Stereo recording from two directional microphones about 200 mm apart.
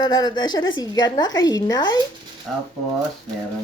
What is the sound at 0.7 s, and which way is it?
Speech, 20° left (ahead or behind).